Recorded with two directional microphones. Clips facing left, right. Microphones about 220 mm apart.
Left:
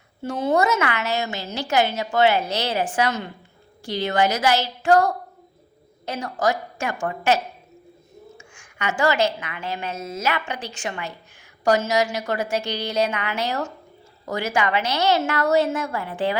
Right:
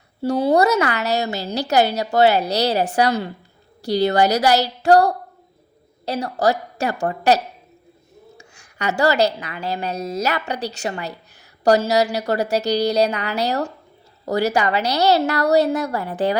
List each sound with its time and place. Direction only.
0.2 s a woman's voice: 35° right (ahead or behind)